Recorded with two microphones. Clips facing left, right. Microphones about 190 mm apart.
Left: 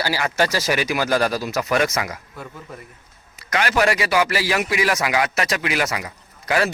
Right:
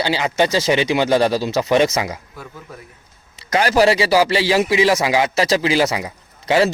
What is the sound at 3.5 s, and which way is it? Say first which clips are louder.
Speech: right 5 dB; 35° right (ahead or behind).